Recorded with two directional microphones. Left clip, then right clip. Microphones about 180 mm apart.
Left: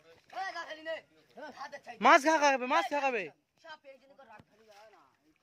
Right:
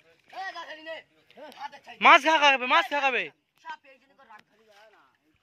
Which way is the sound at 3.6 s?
45° left (ahead or behind).